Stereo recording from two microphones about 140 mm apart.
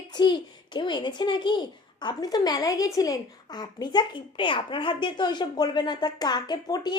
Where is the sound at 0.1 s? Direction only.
30° left (ahead or behind).